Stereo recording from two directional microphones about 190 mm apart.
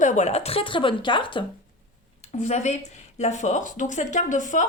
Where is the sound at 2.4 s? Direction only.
35° left (ahead or behind).